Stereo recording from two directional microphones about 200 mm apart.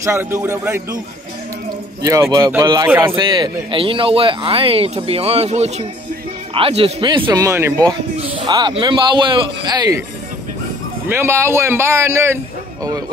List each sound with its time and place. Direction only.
0.0 s speech: 15° right (ahead or behind)
2.3 s speech: 15° right (ahead or behind)
3.2 s speech: 20° right (ahead or behind)
11.1 s speech: 10° right (ahead or behind)